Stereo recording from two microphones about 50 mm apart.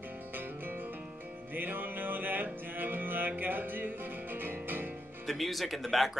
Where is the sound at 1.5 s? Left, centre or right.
Right.